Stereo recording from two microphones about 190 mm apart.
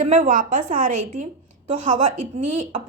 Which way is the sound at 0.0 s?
40° right (ahead or behind).